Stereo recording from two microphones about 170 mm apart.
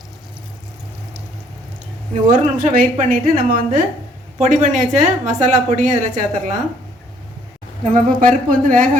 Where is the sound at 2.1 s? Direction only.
50° right (ahead or behind).